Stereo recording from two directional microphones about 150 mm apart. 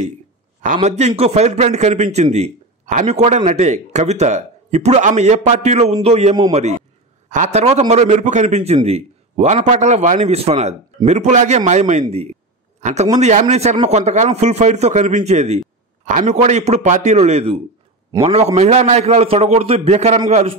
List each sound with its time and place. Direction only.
0.8 s speech: 50° right (ahead or behind)